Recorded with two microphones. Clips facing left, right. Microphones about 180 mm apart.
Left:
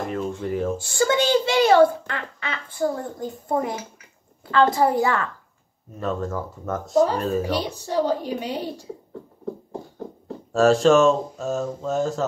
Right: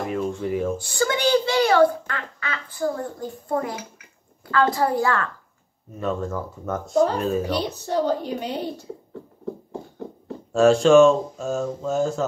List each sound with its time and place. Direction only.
0.0 s a sound: centre (ahead or behind)
0.4 s speech: centre (ahead or behind)
1.1 s a child's voice: 25° left (ahead or behind)
5.9 s speech: centre (ahead or behind)
7.4 s speech: 10° left (ahead or behind)
10.5 s speech: centre (ahead or behind)